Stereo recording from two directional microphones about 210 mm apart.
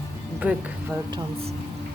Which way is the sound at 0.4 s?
10° right (ahead or behind).